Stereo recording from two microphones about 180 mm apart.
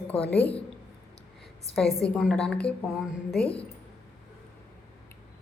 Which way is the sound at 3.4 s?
30° left (ahead or behind).